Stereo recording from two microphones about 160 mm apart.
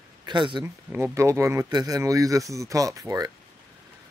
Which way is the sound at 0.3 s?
30° right (ahead or behind).